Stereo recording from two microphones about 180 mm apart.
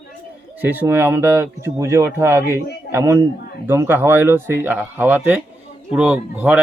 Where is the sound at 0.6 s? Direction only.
10° right (ahead or behind).